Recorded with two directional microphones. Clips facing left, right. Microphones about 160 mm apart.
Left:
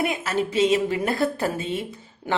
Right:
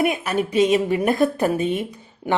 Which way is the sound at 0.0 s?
15° right (ahead or behind).